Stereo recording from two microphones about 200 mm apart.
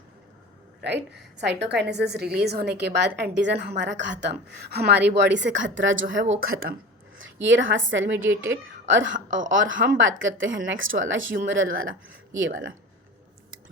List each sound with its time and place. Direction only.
0.9 s a woman's voice: 60° right (ahead or behind); by 6.7 s 90° right
7.2 s a woman's voice: 70° right (ahead or behind)